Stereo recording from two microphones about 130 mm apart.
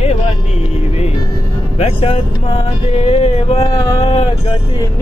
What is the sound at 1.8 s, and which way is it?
Music, 50° left (ahead or behind).